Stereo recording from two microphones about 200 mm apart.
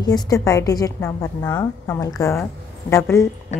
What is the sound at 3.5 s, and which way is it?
Music, 35° left (ahead or behind).